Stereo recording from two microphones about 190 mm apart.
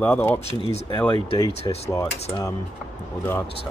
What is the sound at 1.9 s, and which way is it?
Speech, 15° left (ahead or behind).